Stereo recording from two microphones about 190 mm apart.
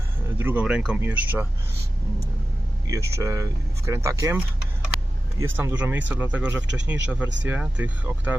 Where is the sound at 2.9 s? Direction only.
15° right (ahead or behind).